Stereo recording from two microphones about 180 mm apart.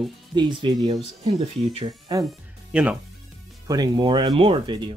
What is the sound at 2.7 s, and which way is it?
Speech, 5° right (ahead or behind).